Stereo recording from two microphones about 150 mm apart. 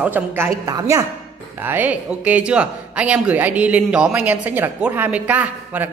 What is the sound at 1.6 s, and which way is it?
A woman's voice, 10° right (ahead or behind).